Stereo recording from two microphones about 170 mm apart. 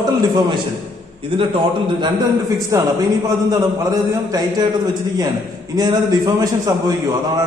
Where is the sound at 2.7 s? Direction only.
20° right (ahead or behind).